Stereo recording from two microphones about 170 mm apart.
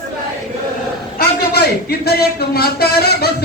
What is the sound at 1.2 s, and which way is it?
A man's voice, 70° left (ahead or behind).